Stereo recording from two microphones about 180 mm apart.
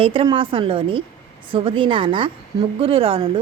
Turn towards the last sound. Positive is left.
turn(degrees=-30)  # may be behind; listen again after turning